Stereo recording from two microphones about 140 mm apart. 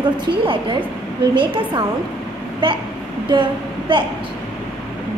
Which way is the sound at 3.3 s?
35° right (ahead or behind).